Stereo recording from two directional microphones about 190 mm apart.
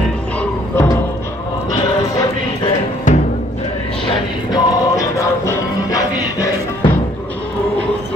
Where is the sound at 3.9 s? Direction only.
30° left (ahead or behind).